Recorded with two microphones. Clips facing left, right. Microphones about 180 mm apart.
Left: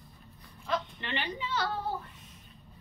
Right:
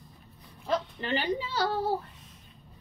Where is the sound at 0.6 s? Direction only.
40° right (ahead or behind).